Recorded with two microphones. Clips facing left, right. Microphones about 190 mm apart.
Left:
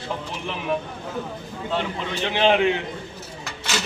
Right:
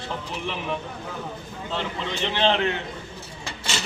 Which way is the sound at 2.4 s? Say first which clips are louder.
Left 4 dB; 10° left (ahead or behind).